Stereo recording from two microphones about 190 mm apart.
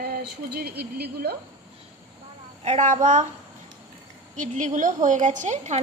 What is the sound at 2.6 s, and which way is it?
Speech, 40° right (ahead or behind).